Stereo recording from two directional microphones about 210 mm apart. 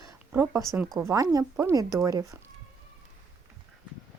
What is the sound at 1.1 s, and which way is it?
Speech, 15° right (ahead or behind).